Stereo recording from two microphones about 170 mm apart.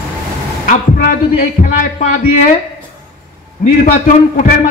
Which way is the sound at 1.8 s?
50° left (ahead or behind).